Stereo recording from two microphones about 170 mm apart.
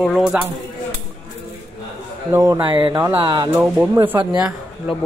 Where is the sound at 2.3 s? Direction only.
20° right (ahead or behind).